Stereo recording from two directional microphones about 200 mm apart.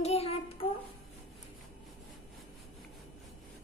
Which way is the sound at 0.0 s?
30° left (ahead or behind).